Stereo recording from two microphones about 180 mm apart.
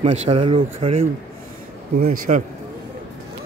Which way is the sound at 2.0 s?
50° right (ahead or behind).